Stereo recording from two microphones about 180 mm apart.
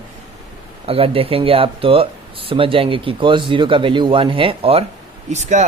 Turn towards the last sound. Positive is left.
turn(degrees=-40)  # may be behind; listen again after turning